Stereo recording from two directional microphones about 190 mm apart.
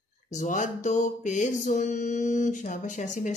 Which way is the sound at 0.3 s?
40° left (ahead or behind).